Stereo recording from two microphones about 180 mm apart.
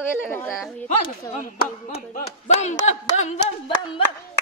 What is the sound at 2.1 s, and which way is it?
A woman's voice, 40° left (ahead or behind).